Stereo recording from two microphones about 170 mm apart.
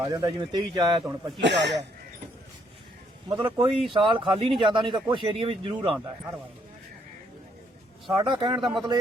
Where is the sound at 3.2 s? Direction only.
30° right (ahead or behind).